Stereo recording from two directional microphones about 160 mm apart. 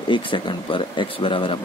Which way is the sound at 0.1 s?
30° left (ahead or behind).